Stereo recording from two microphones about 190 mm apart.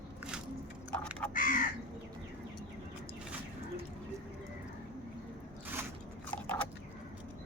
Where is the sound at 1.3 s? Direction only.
45° left (ahead or behind).